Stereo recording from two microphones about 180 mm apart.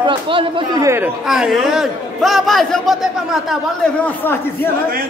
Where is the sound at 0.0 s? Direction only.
30° right (ahead or behind).